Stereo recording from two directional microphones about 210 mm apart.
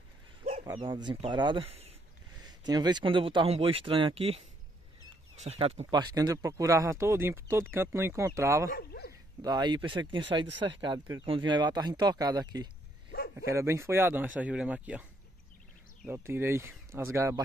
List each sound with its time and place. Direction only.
0.7 s speech: 20° right (ahead or behind)
8.6 s bow-wow: 50° left (ahead or behind)
9.4 s speech: 20° right (ahead or behind)
13.1 s bow-wow: 45° left (ahead or behind)
13.5 s speech: 15° right (ahead or behind)
16.1 s speech: 10° right (ahead or behind)